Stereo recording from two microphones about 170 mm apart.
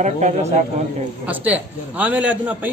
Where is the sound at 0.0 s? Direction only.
40° right (ahead or behind).